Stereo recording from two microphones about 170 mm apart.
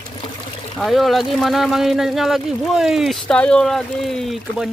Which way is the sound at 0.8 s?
Centre (ahead or behind).